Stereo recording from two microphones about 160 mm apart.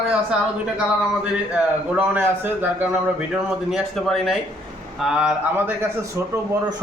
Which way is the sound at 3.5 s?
Centre (ahead or behind).